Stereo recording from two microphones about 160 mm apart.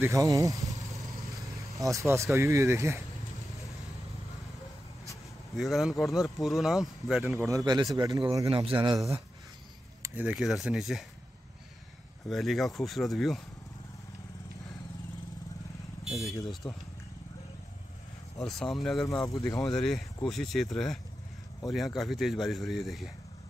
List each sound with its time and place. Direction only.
0.0 s a man's voice: 20° right (ahead or behind)
0.9 s vehicle: 20° right (ahead or behind)
1.8 s speech: 20° right (ahead or behind)
5.6 s speech: centre (ahead or behind)
7.3 s a man's voice: 20° right (ahead or behind)
8.5 s speech: 35° right (ahead or behind)
10.0 s speech: 10° right (ahead or behind)
12.3 s speech: centre (ahead or behind)
16.0 s vehicle: centre (ahead or behind)
16.6 s speech: 15° left (ahead or behind)
18.4 s speech: centre (ahead or behind)
19.0 s speech: 20° left (ahead or behind)
19.8 s speech: centre (ahead or behind)